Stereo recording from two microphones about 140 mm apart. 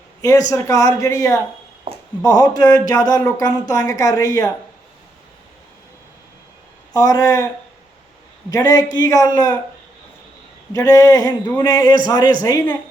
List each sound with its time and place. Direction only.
0.2 s a man's voice: 25° left (ahead or behind)
6.9 s speech: 25° left (ahead or behind)
8.4 s speech: 25° left (ahead or behind)
10.7 s speech: 25° left (ahead or behind)